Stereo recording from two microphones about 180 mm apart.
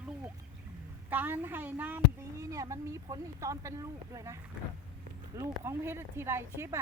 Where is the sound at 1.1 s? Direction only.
10° right (ahead or behind).